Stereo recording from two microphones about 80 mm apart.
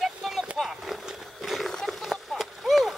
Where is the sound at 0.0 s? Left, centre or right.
Centre.